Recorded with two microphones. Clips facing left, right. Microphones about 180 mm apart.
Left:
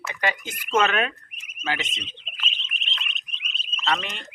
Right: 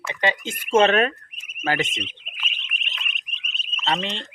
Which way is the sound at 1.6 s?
50° right (ahead or behind).